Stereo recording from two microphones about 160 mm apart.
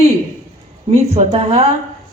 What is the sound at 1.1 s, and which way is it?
Speech, 35° right (ahead or behind).